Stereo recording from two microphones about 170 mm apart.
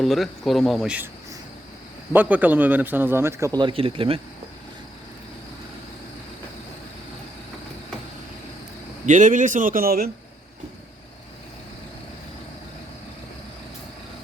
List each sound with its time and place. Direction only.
0.0 s a man's voice: centre (ahead or behind); by 4.2 s 35° right (ahead or behind)
9.0 s a man's voice: 50° right (ahead or behind)